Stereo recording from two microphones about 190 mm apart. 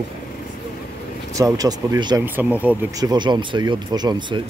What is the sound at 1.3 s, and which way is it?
Speech, 20° right (ahead or behind).